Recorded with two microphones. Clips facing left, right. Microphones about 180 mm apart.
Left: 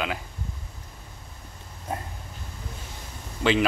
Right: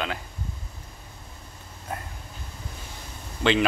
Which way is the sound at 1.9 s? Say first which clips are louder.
Left 2 dB; 25° left (ahead or behind).